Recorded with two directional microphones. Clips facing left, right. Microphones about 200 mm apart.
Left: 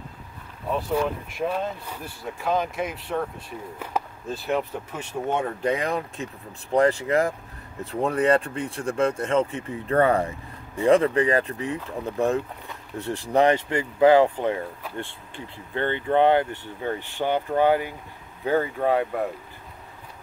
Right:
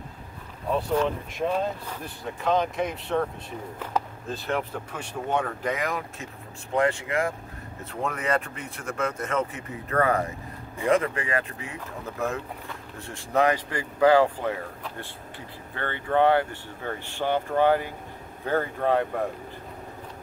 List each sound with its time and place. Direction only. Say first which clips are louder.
0.7 s speech: even; 5° left (ahead or behind); by 11.7 s 35° left (ahead or behind)
13.3 s speech: left 3 dB; 30° left (ahead or behind); by 19.2 s 15° left (ahead or behind)